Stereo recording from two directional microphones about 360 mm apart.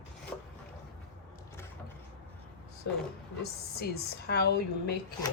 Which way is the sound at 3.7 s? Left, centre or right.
Left.